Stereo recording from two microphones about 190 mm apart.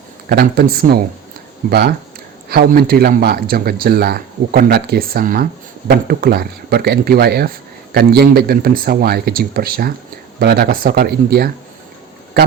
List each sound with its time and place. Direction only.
0.3 s speech: 50° right (ahead or behind)
2.5 s speech: 50° right (ahead or behind)